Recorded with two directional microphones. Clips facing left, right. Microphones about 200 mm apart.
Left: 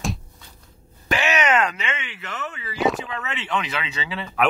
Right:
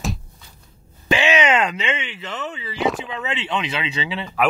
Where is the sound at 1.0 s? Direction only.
25° right (ahead or behind).